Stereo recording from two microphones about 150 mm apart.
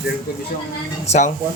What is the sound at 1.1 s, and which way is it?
Speech, 50° left (ahead or behind).